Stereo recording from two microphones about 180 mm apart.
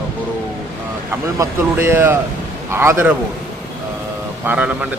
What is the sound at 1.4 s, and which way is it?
A man's voice, 15° right (ahead or behind).